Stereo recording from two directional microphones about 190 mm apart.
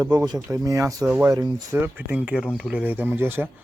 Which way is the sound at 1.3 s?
20° right (ahead or behind).